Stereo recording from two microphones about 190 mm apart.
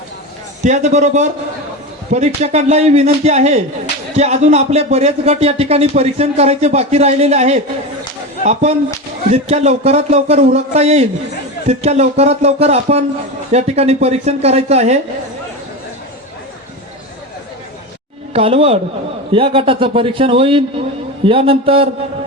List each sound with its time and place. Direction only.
0.6 s speech: 40° right (ahead or behind)
9.3 s speech: 35° right (ahead or behind)
18.3 s a man's voice: 30° right (ahead or behind)